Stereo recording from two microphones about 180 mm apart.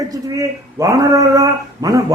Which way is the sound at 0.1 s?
20° right (ahead or behind).